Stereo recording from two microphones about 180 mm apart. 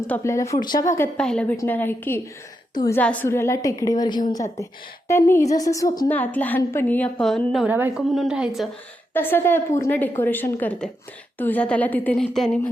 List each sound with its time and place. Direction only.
0.1 s speech: 15° left (ahead or behind)
0.9 s a woman's voice: 10° left (ahead or behind)
6.1 s a woman's voice: 10° left (ahead or behind); by 7.9 s 10° right (ahead or behind)
7.9 s a woman's voice: centre (ahead or behind)
9.1 s a woman's voice: 10° left (ahead or behind)